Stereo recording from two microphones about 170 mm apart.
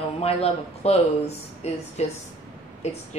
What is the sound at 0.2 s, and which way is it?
A woman's voice, 35° left (ahead or behind).